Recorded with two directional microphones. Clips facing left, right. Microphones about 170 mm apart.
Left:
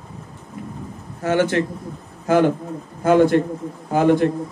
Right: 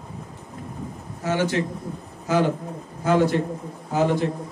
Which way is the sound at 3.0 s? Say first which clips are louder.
Left 5 dB; 55° left (ahead or behind).